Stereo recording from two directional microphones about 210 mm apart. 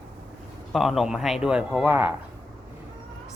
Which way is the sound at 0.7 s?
Centre (ahead or behind).